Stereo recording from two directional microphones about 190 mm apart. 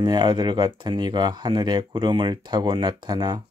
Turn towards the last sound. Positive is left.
turn(degrees=-20)  # may be behind; listen again after turning